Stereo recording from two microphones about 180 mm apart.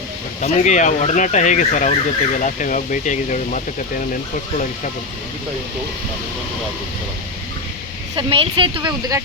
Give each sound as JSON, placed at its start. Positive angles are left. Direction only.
{"t": 0.4, "sound": "speech", "side_deg": 45}
{"t": 8.1, "sound": "speech", "side_deg": -30}